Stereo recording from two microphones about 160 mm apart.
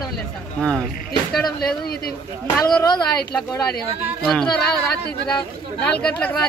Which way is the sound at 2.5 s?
5° left (ahead or behind).